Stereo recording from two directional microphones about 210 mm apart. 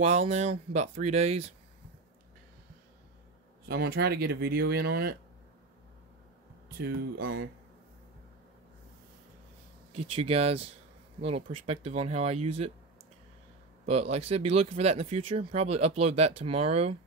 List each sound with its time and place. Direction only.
0.0 s speech: 30° right (ahead or behind)
3.6 s speech: 50° right (ahead or behind)
6.8 s speech: 50° right (ahead or behind)
9.9 s speech: 25° right (ahead or behind)
14.1 s speech: 30° right (ahead or behind)